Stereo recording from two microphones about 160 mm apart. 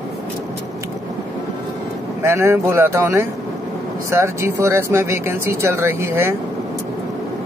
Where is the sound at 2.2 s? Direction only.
15° right (ahead or behind).